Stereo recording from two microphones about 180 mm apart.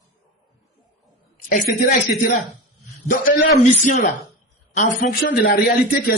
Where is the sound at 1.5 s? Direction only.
45° left (ahead or behind).